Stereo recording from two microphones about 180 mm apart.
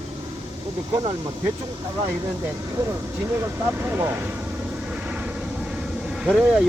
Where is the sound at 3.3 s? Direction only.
15° right (ahead or behind).